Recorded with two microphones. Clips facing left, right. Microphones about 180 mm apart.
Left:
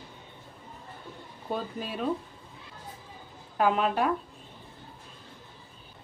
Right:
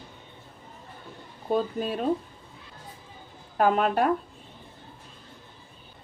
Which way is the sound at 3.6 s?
45° right (ahead or behind).